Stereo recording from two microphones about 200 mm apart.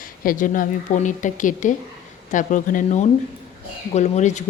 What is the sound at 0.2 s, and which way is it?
A woman's voice, 45° left (ahead or behind).